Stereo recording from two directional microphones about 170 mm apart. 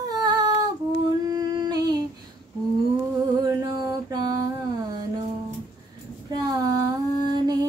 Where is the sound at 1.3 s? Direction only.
25° right (ahead or behind).